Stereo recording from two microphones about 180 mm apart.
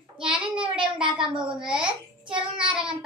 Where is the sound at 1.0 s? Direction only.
25° right (ahead or behind).